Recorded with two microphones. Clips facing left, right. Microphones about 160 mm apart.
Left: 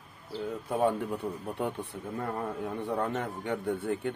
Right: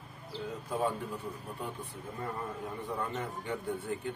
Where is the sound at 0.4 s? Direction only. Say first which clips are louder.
Left 5 dB; 60° left (ahead or behind).